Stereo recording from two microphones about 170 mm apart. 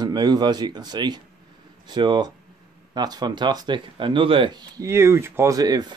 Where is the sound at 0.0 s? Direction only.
25° right (ahead or behind).